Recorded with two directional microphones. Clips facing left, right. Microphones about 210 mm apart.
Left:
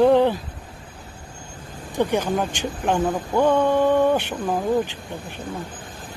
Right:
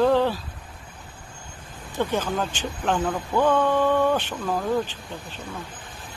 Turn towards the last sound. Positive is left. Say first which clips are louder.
# left 3 dB
turn(degrees=15)  # may be behind; listen again after turning